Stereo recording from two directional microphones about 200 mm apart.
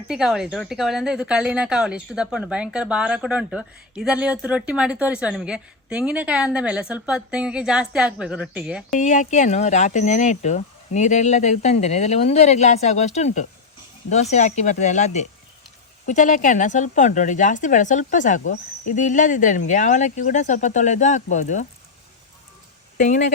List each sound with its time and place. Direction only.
0.1 s speech: 5° right (ahead or behind)
9.0 s speech: 35° left (ahead or behind)
23.0 s speech: 40° left (ahead or behind)